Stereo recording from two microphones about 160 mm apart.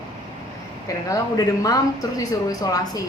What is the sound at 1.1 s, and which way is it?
A woman's voice, 20° left (ahead or behind).